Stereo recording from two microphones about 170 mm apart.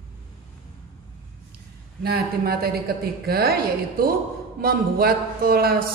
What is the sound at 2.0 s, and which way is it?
A woman's voice, 65° right (ahead or behind).